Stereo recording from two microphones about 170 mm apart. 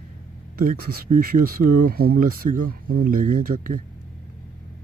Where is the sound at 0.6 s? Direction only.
60° right (ahead or behind).